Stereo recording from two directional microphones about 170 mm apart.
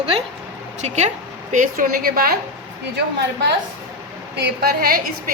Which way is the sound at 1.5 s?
50° right (ahead or behind).